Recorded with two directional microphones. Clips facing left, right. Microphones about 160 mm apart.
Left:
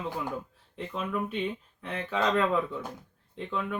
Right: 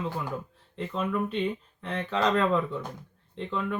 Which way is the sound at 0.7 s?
10° left (ahead or behind).